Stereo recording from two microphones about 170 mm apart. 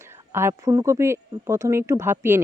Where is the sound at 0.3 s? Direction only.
15° right (ahead or behind).